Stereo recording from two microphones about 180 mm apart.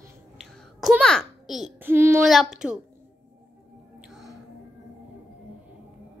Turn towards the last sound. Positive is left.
turn(degrees=0)  # may be behind; listen again after turning